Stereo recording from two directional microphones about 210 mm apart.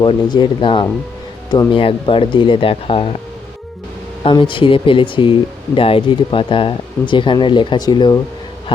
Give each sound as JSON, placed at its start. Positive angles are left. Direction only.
{"t": 0.0, "sound": "speech", "side_deg": 20}
{"t": 4.2, "sound": "speech", "side_deg": 25}